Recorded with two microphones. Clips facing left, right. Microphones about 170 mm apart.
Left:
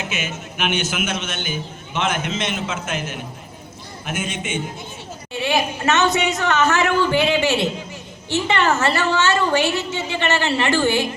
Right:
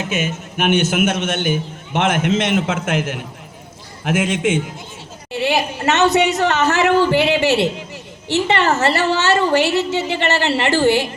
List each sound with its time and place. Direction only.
0.1 s a man's voice: 50° right (ahead or behind); by 4.6 s 90° right
5.3 s a woman's voice: 35° right (ahead or behind)